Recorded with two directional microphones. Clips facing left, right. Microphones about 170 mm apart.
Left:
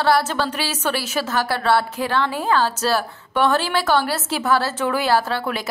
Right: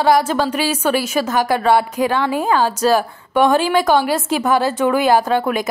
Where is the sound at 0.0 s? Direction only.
10° right (ahead or behind).